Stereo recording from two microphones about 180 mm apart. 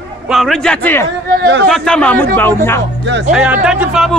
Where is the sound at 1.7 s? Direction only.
5° left (ahead or behind).